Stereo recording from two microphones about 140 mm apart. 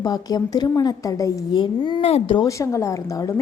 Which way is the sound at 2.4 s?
20° left (ahead or behind).